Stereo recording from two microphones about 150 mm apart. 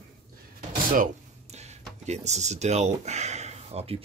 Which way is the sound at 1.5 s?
45° right (ahead or behind).